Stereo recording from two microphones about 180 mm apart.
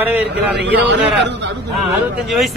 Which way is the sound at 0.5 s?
75° right (ahead or behind).